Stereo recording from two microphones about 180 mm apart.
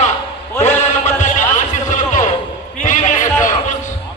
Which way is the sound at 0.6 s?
40° left (ahead or behind).